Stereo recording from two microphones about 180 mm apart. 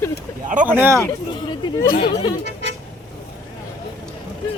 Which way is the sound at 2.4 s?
75° right (ahead or behind).